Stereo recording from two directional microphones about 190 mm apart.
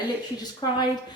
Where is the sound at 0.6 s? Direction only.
20° left (ahead or behind).